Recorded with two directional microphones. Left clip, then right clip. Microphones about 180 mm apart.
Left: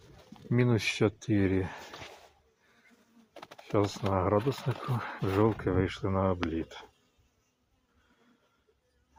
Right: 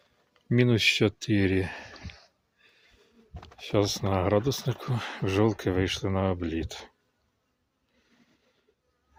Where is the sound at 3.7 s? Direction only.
40° right (ahead or behind).